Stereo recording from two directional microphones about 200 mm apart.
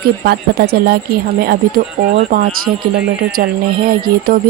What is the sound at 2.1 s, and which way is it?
Speech, 45° right (ahead or behind).